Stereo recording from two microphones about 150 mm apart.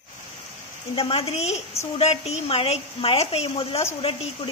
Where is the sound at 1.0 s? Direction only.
40° left (ahead or behind).